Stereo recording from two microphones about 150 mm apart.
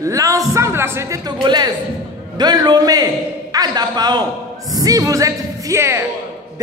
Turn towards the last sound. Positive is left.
turn(degrees=-20)  # may be behind; listen again after turning